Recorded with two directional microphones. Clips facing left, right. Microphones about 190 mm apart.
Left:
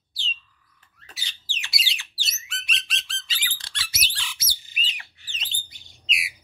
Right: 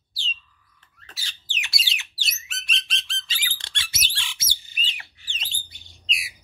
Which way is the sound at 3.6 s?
25° right (ahead or behind).